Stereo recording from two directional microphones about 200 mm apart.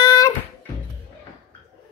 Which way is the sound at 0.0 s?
20° left (ahead or behind).